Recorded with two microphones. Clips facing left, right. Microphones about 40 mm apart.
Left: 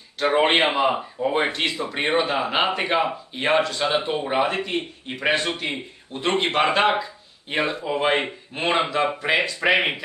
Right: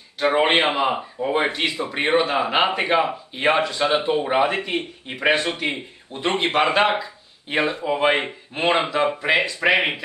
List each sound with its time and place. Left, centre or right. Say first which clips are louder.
0.2 s speech: right 1 dB; centre
8.5 s speech: right 2 dB; centre